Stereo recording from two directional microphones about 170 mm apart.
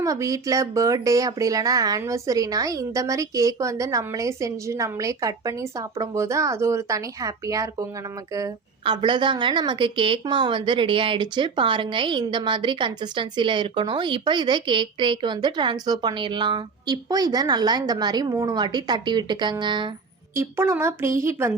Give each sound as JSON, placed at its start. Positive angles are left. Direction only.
{"t": 0.0, "sound": "a woman's voice", "side_deg": -20}
{"t": 20.3, "sound": "a woman's voice", "side_deg": -15}